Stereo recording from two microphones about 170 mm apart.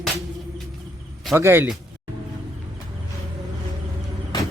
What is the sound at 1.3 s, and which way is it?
Speech, 15° right (ahead or behind).